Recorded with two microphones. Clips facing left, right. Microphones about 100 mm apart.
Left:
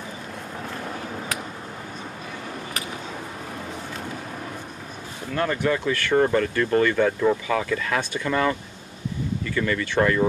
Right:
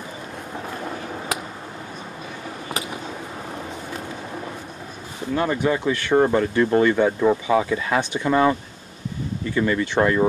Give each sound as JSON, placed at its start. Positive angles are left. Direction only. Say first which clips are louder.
{"t": 5.3, "sound": "speech", "louder": "right 2 dB", "side_deg": -20}